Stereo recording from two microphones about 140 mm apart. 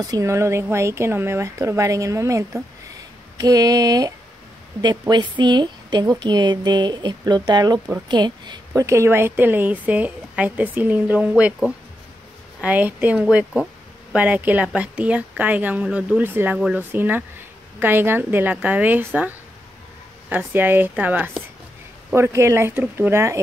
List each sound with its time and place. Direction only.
0.0 s speech: 25° right (ahead or behind)
5.1 s a woman's voice: 30° right (ahead or behind); by 16.5 s 15° right (ahead or behind)
16.5 s speech: 5° right (ahead or behind)
16.9 s a woman's voice: 15° right (ahead or behind)